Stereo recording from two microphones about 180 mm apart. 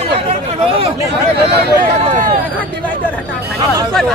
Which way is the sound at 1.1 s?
65° right (ahead or behind).